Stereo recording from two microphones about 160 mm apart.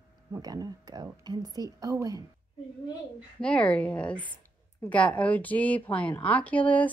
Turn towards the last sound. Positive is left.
turn(degrees=10)  # may be behind; listen again after turning